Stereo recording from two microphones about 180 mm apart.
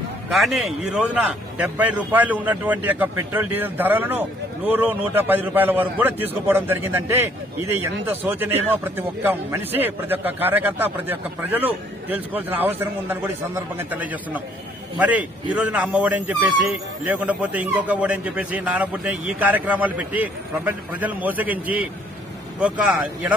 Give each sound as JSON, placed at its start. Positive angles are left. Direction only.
{"t": 0.3, "sound": "speech", "side_deg": 0}